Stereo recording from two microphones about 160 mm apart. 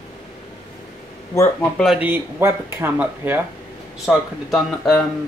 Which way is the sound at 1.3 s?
15° left (ahead or behind).